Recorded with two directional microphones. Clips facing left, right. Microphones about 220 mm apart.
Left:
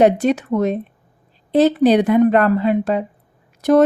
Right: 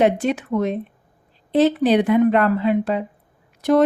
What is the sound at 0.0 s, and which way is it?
A woman's voice, 40° left (ahead or behind).